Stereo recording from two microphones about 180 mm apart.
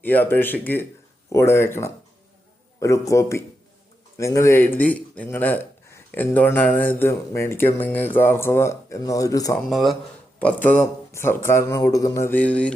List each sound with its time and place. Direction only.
0.0 s speech: 10° left (ahead or behind)
9.6 s speech: centre (ahead or behind)
10.4 s speech: 10° left (ahead or behind)